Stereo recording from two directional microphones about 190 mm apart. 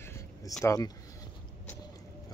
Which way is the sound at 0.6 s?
15° left (ahead or behind).